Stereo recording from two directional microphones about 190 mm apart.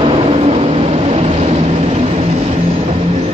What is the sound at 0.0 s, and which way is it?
Vehicle, 30° right (ahead or behind).